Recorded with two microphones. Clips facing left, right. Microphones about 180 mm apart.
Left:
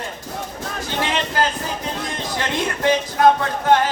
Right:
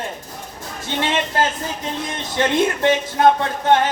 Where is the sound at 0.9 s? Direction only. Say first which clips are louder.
Right 2 dB; 25° right (ahead or behind).